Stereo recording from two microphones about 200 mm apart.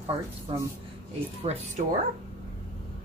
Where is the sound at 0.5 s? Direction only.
25° right (ahead or behind).